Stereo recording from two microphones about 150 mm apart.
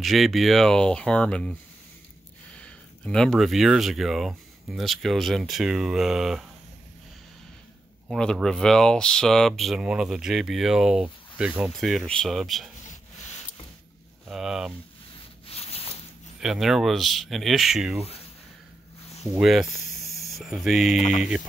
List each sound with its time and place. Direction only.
0.0 s speech: centre (ahead or behind)
8.1 s speech: 5° left (ahead or behind)
14.3 s speech: 5° right (ahead or behind)
15.4 s a sound: 40° left (ahead or behind)
16.3 s speech: 5° right (ahead or behind)
19.4 s speech: centre (ahead or behind)